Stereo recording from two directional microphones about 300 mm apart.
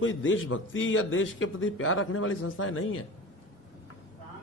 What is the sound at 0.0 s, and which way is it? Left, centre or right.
A man's voice, left.